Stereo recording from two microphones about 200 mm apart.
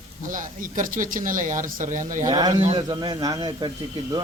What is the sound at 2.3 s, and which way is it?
Speech, 20° right (ahead or behind).